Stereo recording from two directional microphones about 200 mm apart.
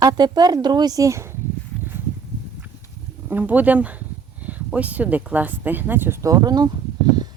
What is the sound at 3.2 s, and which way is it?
Speech, 10° right (ahead or behind).